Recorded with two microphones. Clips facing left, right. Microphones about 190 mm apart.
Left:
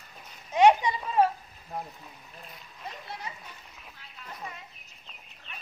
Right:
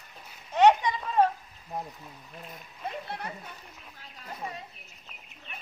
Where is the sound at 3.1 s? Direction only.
55° right (ahead or behind).